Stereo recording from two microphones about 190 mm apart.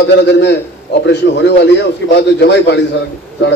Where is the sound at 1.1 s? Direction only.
65° left (ahead or behind).